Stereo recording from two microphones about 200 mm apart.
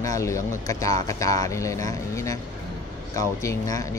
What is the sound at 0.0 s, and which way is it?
Speech, 15° left (ahead or behind).